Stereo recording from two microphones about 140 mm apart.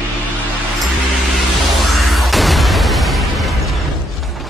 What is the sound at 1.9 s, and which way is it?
Music, centre (ahead or behind).